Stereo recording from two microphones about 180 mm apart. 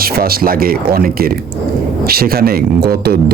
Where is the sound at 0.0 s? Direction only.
55° right (ahead or behind).